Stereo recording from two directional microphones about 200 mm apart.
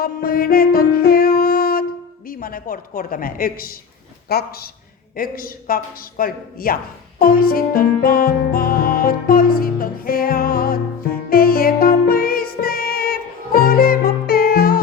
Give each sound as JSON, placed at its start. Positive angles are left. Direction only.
{"t": 0.0, "sound": "music", "side_deg": 50}
{"t": 4.3, "sound": "speech", "side_deg": 50}
{"t": 7.2, "sound": "music", "side_deg": 45}